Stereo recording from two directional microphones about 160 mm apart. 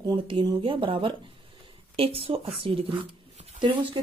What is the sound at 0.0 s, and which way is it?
Speech, 30° right (ahead or behind).